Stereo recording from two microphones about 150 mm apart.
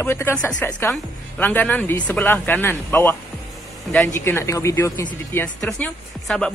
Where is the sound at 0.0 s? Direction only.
15° left (ahead or behind).